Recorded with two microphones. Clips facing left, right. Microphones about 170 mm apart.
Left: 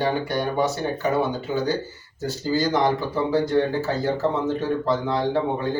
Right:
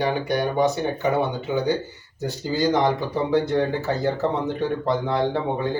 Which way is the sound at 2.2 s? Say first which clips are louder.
Right 1 dB; 20° right (ahead or behind).